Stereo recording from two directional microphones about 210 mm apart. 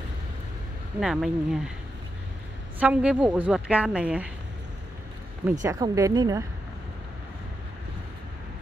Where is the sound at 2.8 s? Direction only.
5° right (ahead or behind).